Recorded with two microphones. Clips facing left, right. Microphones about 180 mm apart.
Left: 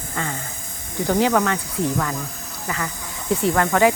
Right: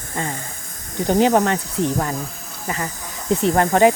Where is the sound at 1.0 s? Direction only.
20° right (ahead or behind).